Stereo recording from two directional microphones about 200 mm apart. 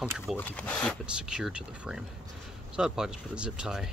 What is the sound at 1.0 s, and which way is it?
Speech, 5° right (ahead or behind).